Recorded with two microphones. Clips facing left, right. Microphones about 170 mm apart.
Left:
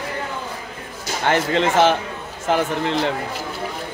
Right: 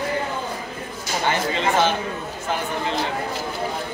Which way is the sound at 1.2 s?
75° left (ahead or behind).